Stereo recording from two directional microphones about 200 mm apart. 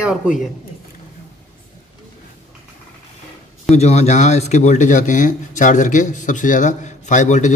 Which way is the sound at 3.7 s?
30° left (ahead or behind).